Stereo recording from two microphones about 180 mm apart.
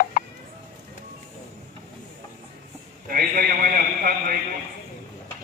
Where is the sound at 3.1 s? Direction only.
50° right (ahead or behind).